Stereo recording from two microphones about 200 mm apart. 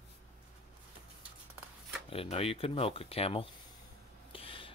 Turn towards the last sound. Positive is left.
turn(degrees=25)  # may be behind; listen again after turning